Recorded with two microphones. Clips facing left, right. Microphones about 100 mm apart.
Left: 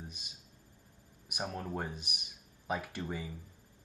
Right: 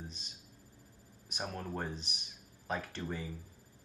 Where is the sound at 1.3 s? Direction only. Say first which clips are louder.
Left 2 dB; 10° left (ahead or behind).